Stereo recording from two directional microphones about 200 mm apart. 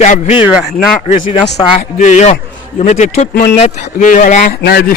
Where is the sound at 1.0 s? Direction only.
40° left (ahead or behind).